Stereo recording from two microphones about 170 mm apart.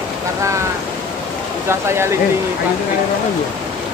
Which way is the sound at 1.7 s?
15° right (ahead or behind).